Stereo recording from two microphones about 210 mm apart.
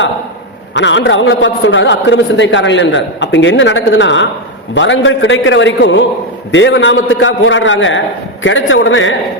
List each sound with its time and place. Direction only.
0.7 s a man's voice: 60° left (ahead or behind)